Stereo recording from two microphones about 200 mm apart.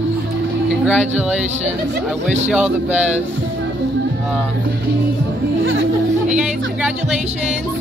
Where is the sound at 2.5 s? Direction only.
5° right (ahead or behind).